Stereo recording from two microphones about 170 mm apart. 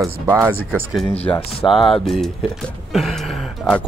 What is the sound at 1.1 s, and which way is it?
Speech, 35° left (ahead or behind).